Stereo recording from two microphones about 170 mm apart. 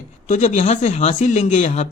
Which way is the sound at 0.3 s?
45° left (ahead or behind).